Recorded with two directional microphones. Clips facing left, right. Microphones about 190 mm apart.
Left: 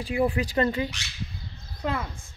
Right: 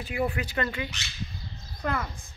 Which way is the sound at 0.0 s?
30° left (ahead or behind).